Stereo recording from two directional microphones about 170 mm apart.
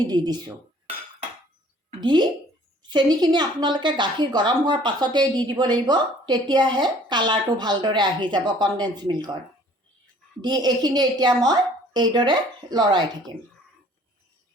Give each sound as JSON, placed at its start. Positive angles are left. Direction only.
{"t": 0.0, "sound": "speech", "side_deg": -25}
{"t": 2.0, "sound": "speech", "side_deg": -25}
{"t": 10.4, "sound": "speech", "side_deg": -25}